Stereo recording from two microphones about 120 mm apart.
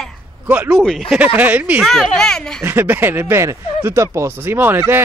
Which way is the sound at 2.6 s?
15° right (ahead or behind).